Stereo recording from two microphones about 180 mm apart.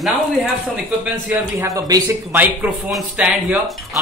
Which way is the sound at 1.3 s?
15° right (ahead or behind).